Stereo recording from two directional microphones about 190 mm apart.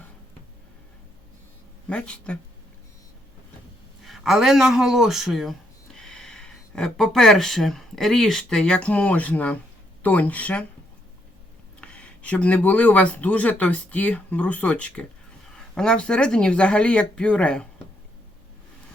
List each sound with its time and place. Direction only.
1.9 s speech: 5° left (ahead or behind)
4.0 s a man's voice: centre (ahead or behind)
11.8 s speech: 5° left (ahead or behind)